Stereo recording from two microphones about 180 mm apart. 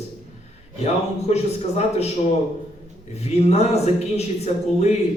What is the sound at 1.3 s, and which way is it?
Speech, 35° left (ahead or behind).